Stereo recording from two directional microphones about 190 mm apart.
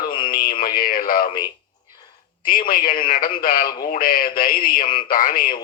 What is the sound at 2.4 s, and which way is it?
A man's voice, 50° left (ahead or behind).